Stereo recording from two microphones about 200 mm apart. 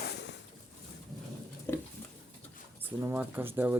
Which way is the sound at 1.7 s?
10° left (ahead or behind).